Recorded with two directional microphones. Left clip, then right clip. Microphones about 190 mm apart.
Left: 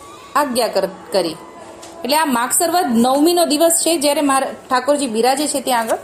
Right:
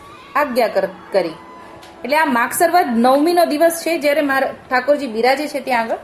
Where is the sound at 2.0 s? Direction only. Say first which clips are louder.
Even; centre (ahead or behind).